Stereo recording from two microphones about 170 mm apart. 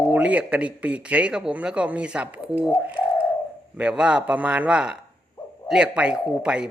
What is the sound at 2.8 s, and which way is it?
Bird, 10° right (ahead or behind).